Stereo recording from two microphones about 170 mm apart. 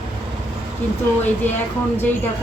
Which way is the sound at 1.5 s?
10° left (ahead or behind).